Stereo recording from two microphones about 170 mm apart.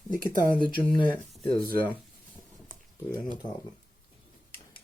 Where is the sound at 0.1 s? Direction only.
55° right (ahead or behind).